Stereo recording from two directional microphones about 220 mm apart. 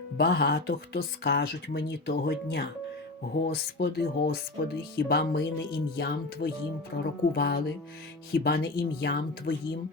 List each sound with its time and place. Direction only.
0.2 s speech: 45° left (ahead or behind)